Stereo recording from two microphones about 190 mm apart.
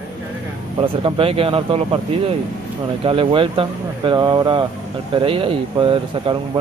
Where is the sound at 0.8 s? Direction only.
30° right (ahead or behind).